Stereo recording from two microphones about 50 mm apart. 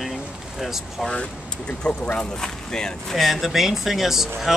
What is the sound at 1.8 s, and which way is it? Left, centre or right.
Speech, centre.